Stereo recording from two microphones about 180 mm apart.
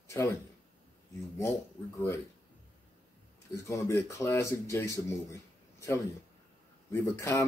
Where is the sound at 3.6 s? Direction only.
15° left (ahead or behind).